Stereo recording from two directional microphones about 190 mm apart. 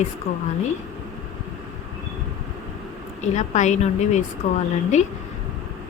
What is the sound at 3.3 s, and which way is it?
A woman's voice, 40° left (ahead or behind).